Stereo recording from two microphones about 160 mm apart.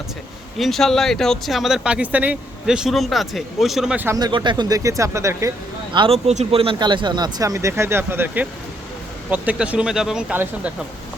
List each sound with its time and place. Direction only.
0.6 s speech: centre (ahead or behind)
4.2 s speech: 30° right (ahead or behind)
5.9 s speech: 35° right (ahead or behind); by 10.7 s 10° right (ahead or behind)